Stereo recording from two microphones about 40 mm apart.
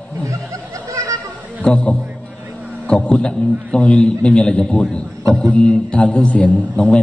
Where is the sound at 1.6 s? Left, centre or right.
Left.